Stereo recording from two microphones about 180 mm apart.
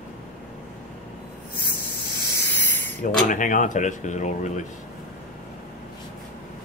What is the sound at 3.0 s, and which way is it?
Speech, 45° left (ahead or behind).